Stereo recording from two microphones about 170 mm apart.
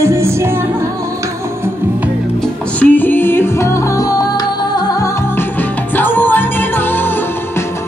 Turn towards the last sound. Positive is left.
turn(degrees=10)  # may be behind; listen again after turning